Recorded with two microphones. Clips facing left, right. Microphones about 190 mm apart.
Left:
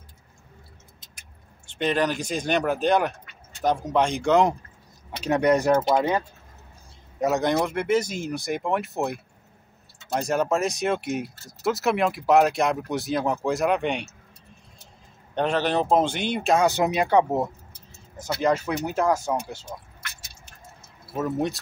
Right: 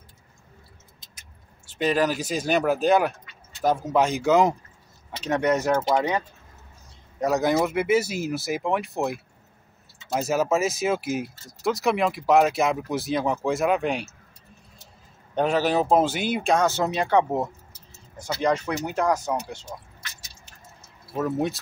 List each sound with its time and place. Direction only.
1.7 s speech: 5° right (ahead or behind)
5.2 s speech: 15° left (ahead or behind)
7.2 s speech: centre (ahead or behind)
15.3 s speech: 5° right (ahead or behind)
16.5 s speech: 15° left (ahead or behind)
20.0 s squish: 60° left (ahead or behind)
21.1 s speech: centre (ahead or behind)